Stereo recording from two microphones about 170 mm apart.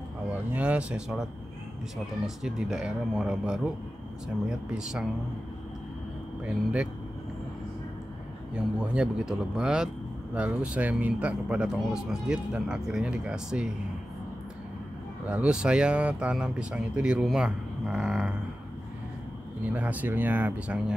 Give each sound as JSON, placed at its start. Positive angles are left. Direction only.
{"t": 0.3, "sound": "speech", "side_deg": -10}
{"t": 2.2, "sound": "speech", "side_deg": -5}
{"t": 6.4, "sound": "speech", "side_deg": -5}
{"t": 8.7, "sound": "speech", "side_deg": -5}
{"t": 15.2, "sound": "speech", "side_deg": -5}
{"t": 19.6, "sound": "speech", "side_deg": -10}